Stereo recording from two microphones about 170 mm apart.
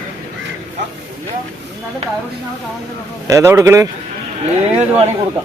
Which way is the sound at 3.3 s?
15° right (ahead or behind).